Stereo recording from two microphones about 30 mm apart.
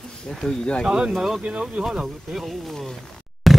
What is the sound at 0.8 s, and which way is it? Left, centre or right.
Speech, right.